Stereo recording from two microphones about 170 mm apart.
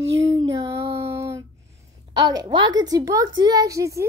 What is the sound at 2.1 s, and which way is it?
A woman's voice, 20° right (ahead or behind).